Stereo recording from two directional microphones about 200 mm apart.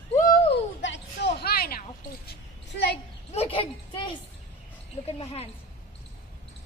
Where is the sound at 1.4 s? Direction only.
50° left (ahead or behind).